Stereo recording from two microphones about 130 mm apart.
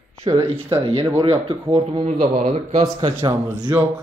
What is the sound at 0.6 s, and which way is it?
Speech, 20° right (ahead or behind).